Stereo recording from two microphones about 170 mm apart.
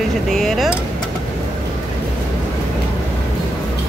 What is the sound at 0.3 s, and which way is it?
Speech, centre (ahead or behind).